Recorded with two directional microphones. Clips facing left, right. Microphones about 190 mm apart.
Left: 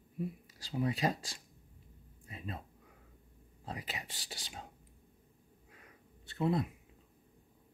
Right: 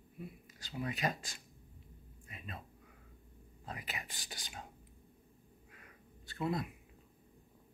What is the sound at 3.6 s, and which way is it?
Speech, 30° left (ahead or behind).